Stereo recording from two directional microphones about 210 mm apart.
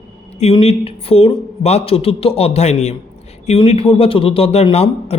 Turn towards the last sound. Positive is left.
turn(degrees=30)  # may be behind; listen again after turning